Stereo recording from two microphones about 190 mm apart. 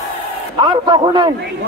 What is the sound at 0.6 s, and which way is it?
Speech, 25° right (ahead or behind).